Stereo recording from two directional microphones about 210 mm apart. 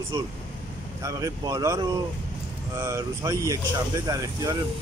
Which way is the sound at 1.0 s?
15° right (ahead or behind).